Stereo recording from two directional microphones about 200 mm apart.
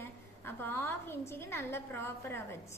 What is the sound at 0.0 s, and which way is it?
A woman's voice, 10° left (ahead or behind).